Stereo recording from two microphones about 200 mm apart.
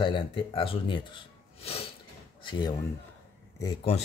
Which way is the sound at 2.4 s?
20° left (ahead or behind).